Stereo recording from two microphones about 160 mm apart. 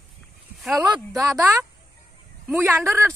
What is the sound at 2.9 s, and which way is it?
Speech, 15° right (ahead or behind).